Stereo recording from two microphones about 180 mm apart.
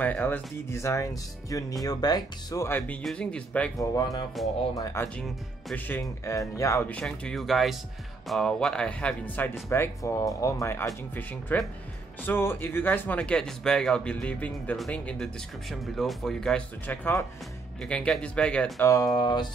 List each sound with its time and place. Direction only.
0.0 s speech: 10° left (ahead or behind)
3.0 s speech: 5° left (ahead or behind)
3.7 s speech: 20° left (ahead or behind)
5.0 s speech: 5° left (ahead or behind)
5.9 s speech: 15° left (ahead or behind)
18.9 s speech: 20° left (ahead or behind)